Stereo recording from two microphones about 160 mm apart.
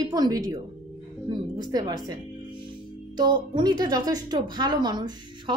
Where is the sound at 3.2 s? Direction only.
25° right (ahead or behind).